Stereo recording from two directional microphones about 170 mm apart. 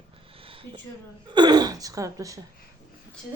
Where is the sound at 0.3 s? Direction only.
30° right (ahead or behind).